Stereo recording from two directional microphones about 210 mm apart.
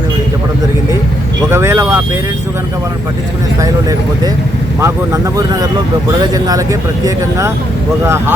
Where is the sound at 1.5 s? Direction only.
10° right (ahead or behind).